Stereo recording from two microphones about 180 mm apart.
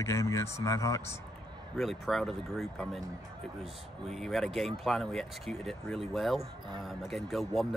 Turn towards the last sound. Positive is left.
turn(degrees=0)  # may be behind; listen again after turning